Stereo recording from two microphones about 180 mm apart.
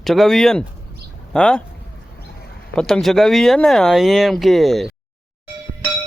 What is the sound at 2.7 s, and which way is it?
Speech, 5° left (ahead or behind).